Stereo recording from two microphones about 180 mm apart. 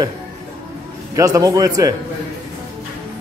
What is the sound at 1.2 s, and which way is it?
Speech, 20° right (ahead or behind).